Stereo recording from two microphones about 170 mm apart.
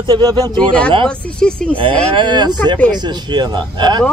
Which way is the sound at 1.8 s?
30° right (ahead or behind).